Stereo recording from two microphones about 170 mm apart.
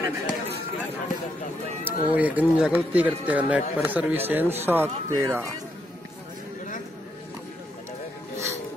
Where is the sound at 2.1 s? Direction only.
10° right (ahead or behind).